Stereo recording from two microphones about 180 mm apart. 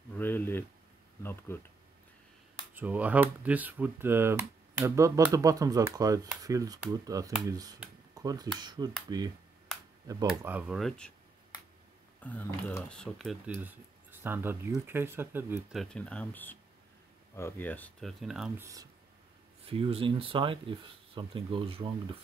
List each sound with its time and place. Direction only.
0.1 s a sound: 10° left (ahead or behind)
1.2 s speech: 10° left (ahead or behind)
2.7 s speech: 10° right (ahead or behind)
10.2 s speech: 5° right (ahead or behind)
12.2 s speech: 10° left (ahead or behind)
13.5 s speech: 10° right (ahead or behind)
15.7 s speech: centre (ahead or behind)
18.6 s speech: 20° right (ahead or behind)
19.6 s speech: 30° right (ahead or behind)